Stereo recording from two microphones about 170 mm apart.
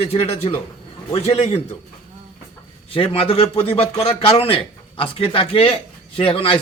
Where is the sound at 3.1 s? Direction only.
35° left (ahead or behind).